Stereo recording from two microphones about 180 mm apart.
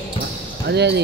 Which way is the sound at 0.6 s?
70° right (ahead or behind).